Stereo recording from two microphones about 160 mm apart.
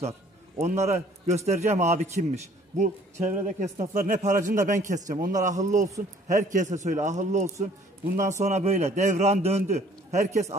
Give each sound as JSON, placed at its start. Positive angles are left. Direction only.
{"t": 0.6, "sound": "a man's voice", "side_deg": -45}